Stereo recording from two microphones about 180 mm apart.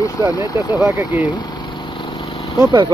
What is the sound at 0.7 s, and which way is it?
Speech, 5° right (ahead or behind).